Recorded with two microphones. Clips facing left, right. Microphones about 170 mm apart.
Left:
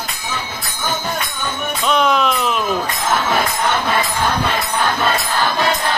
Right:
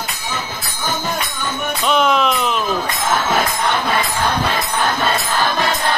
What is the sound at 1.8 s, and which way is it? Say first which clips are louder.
Music: even; centre (ahead or behind).